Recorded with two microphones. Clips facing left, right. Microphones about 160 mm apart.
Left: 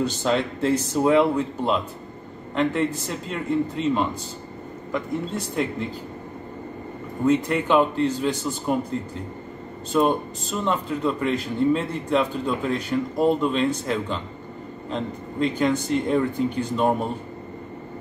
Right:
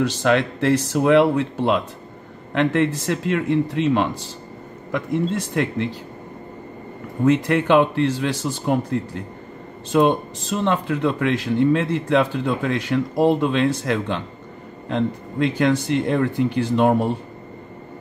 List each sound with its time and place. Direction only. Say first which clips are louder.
0.0 s speech: right 4 dB; 75° right (ahead or behind)
7.2 s speech: right 3 dB; 75° right (ahead or behind)
9.9 s a man's voice: right 3 dB; 85° right